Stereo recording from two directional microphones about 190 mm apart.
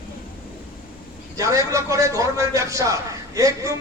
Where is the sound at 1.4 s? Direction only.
15° right (ahead or behind).